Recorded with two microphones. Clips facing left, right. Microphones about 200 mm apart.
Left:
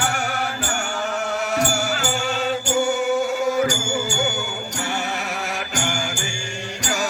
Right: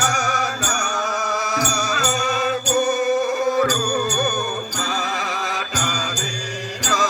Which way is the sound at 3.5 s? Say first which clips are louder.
Right 2 dB; 65° right (ahead or behind).